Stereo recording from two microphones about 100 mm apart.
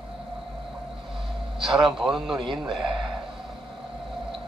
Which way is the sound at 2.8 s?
55° right (ahead or behind).